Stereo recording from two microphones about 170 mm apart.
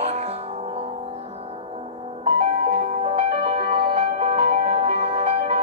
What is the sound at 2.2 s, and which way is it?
Music, 35° right (ahead or behind).